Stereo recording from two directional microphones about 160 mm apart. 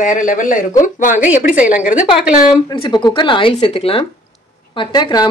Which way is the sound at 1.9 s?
10° right (ahead or behind).